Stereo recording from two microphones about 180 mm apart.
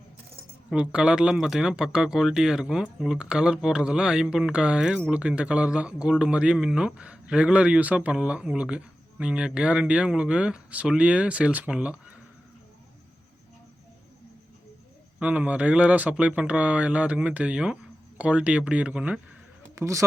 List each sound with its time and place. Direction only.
0.7 s speech: 5° right (ahead or behind)
15.2 s speech: 5° right (ahead or behind)
19.7 s a man's voice: 15° right (ahead or behind)